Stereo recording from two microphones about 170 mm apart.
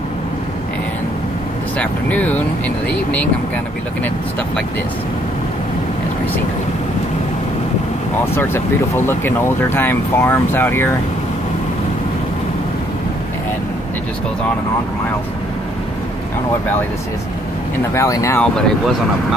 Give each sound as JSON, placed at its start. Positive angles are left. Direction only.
{"t": 1.8, "sound": "speech", "side_deg": 10}
{"t": 8.4, "sound": "speech", "side_deg": 15}
{"t": 17.9, "sound": "speech", "side_deg": 20}